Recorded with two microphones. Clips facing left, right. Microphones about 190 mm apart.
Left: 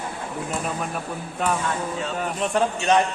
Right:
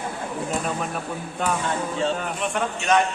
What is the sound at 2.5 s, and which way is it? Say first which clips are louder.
Speech: left 2 dB; 30° left (ahead or behind).